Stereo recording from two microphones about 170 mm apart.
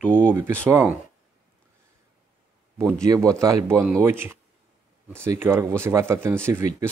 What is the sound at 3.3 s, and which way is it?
Speech, 20° right (ahead or behind).